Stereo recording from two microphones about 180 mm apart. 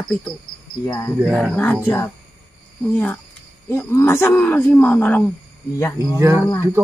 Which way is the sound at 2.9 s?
10° left (ahead or behind).